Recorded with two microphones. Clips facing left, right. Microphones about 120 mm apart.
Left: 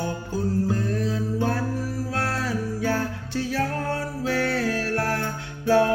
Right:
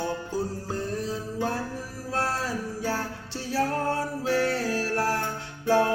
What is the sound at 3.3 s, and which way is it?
Music, 35° right (ahead or behind).